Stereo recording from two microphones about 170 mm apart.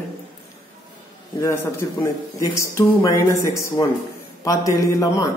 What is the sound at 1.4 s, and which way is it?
Speech, 15° left (ahead or behind).